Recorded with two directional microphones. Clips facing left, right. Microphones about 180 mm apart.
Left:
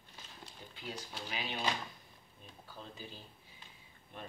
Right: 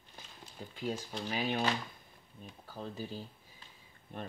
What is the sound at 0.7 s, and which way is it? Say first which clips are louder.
Speech: right 8 dB; 45° right (ahead or behind).